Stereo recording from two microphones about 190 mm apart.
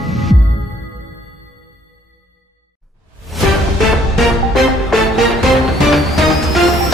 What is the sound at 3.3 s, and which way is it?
Music, centre (ahead or behind).